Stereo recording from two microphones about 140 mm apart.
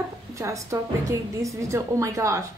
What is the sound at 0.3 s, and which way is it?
A woman's voice, 20° right (ahead or behind).